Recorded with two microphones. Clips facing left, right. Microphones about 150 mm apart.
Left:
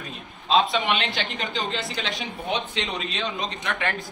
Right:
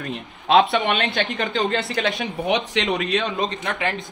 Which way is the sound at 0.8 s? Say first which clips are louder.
Right 4 dB; 45° right (ahead or behind).